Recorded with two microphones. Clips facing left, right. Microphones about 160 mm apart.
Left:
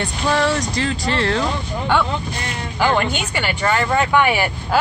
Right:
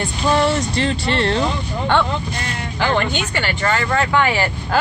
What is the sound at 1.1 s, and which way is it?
Speech, 30° right (ahead or behind).